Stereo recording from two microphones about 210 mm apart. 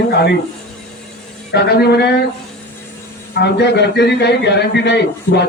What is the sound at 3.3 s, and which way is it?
A man's voice, 55° left (ahead or behind).